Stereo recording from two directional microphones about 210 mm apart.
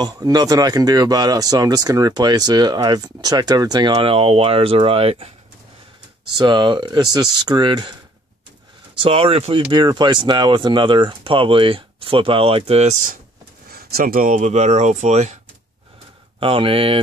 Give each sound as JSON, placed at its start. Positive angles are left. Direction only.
{"t": 0.0, "sound": "speech", "side_deg": -20}
{"t": 6.3, "sound": "speech", "side_deg": -20}
{"t": 9.0, "sound": "speech", "side_deg": -25}
{"t": 13.7, "sound": "speech", "side_deg": -45}
{"t": 16.3, "sound": "speech", "side_deg": -25}